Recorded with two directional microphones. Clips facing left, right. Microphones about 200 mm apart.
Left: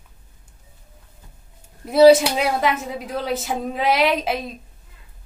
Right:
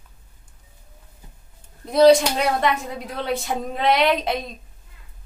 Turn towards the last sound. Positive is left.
turn(degrees=5)  # may be behind; listen again after turning